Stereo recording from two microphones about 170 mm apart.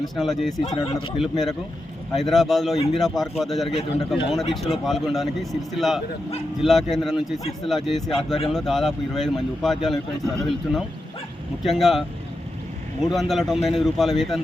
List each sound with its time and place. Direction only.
0.0 s speech: centre (ahead or behind)
0.5 s speech: 25° left (ahead or behind)
1.2 s speech: centre (ahead or behind)
13.1 s speech: centre (ahead or behind)